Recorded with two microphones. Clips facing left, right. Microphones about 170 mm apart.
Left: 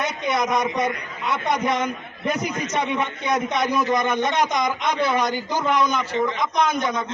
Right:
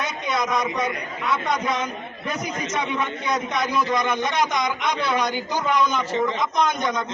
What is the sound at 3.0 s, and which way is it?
Speech, 60° left (ahead or behind).